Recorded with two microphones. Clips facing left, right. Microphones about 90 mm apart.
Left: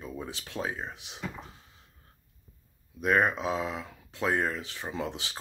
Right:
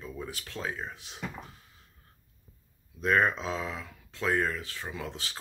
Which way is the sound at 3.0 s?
15° left (ahead or behind).